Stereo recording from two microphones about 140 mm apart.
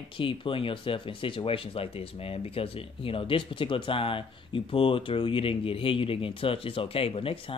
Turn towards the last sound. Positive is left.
turn(degrees=40)  # may be behind; listen again after turning